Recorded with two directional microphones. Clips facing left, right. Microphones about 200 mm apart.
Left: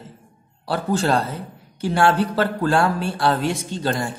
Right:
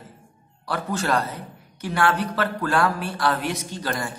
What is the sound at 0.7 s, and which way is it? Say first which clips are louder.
A man's voice: left 4 dB; 30° left (ahead or behind).